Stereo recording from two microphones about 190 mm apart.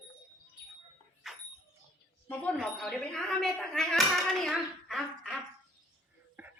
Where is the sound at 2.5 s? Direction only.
Centre (ahead or behind).